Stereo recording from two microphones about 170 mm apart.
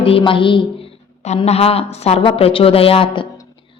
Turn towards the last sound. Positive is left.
turn(degrees=35)  # may be behind; listen again after turning